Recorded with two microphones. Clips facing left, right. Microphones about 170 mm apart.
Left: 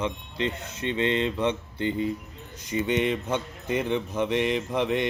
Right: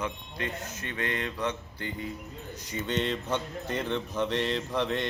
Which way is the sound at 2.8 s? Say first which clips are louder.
Left 5 dB; 15° left (ahead or behind).